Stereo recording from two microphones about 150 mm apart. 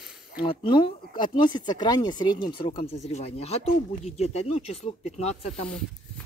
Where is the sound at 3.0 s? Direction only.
45° left (ahead or behind).